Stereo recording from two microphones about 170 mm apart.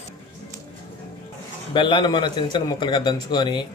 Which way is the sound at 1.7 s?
30° left (ahead or behind).